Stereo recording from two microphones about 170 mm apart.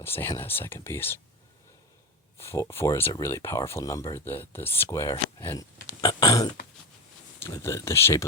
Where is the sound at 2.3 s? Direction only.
15° left (ahead or behind).